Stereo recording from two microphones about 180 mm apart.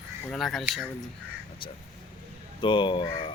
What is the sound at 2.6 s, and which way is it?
Speech, 25° left (ahead or behind).